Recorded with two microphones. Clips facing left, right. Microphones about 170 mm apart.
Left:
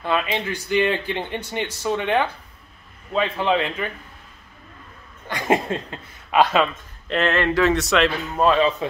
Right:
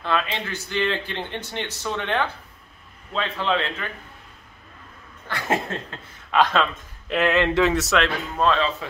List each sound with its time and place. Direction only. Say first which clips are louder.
0.0 s speech: left 2 dB; 15° left (ahead or behind)
5.3 s speech: left 4 dB; 15° left (ahead or behind)
7.1 s speech: even; 10° right (ahead or behind)
7.7 s speech: left 2 dB; 5° right (ahead or behind)
8.4 s speech: left 4 dB; 15° left (ahead or behind)